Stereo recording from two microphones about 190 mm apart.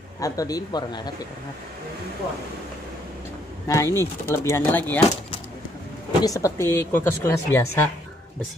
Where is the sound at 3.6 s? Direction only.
15° left (ahead or behind).